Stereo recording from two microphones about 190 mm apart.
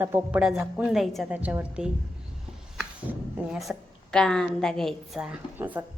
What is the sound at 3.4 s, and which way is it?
A woman's voice, centre (ahead or behind).